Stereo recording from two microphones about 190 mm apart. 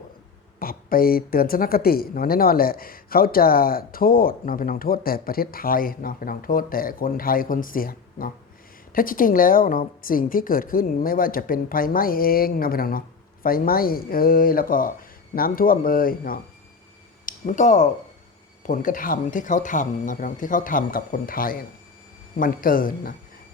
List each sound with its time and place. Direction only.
0.6 s speech: 50° left (ahead or behind)